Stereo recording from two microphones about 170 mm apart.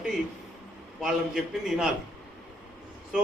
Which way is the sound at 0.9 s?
Centre (ahead or behind).